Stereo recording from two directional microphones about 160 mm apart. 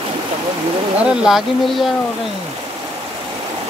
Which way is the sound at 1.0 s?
5° right (ahead or behind).